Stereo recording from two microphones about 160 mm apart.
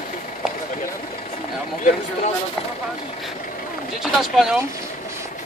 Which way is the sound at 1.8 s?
50° left (ahead or behind).